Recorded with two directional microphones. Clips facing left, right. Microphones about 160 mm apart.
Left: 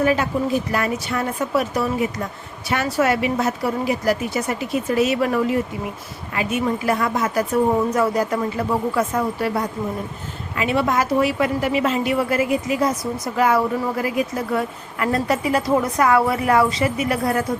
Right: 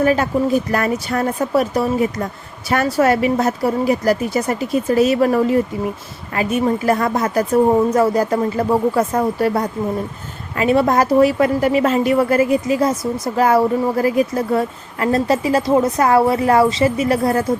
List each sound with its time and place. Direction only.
0.0 s speech: 45° right (ahead or behind)